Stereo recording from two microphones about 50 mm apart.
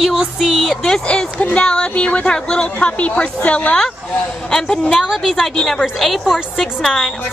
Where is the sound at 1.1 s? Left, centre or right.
Left.